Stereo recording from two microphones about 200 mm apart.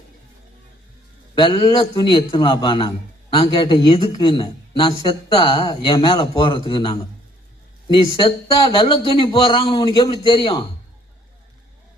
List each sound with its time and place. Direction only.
1.4 s speech: 25° left (ahead or behind)